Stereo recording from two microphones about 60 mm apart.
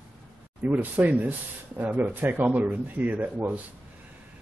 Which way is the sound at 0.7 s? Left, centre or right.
Right.